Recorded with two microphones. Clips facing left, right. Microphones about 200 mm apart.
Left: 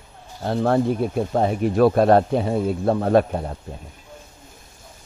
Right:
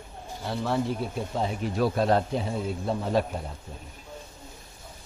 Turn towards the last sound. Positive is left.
turn(degrees=60)  # may be behind; listen again after turning